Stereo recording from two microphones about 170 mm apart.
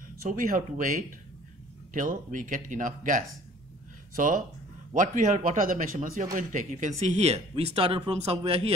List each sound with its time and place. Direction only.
0.2 s speech: 55° right (ahead or behind); by 8.7 s 35° right (ahead or behind)